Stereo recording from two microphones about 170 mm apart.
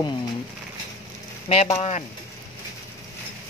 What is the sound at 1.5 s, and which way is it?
Speech, 35° left (ahead or behind).